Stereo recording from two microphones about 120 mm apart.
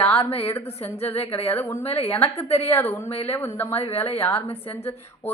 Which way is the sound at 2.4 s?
60° left (ahead or behind).